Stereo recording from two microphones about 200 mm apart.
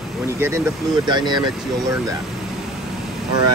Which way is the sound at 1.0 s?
20° right (ahead or behind).